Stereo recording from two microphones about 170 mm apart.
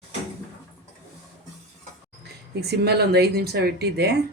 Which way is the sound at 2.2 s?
70° right (ahead or behind).